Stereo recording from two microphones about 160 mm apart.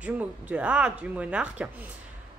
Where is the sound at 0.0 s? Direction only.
10° right (ahead or behind).